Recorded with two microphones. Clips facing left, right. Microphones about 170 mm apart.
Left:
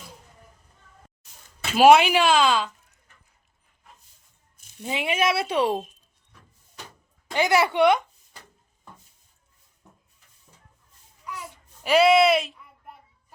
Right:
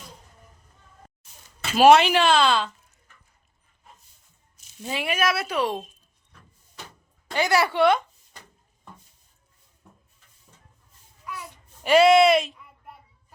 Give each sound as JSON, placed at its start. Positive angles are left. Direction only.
{"t": 1.7, "sound": "speech", "side_deg": 10}
{"t": 4.8, "sound": "speech", "side_deg": 20}
{"t": 7.3, "sound": "a sound", "side_deg": 20}
{"t": 11.8, "sound": "speech", "side_deg": 0}